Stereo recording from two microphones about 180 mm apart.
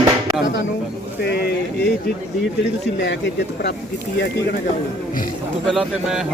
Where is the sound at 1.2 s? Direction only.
65° left (ahead or behind).